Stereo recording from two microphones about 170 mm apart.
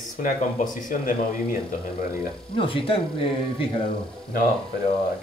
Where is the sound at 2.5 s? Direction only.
30° left (ahead or behind).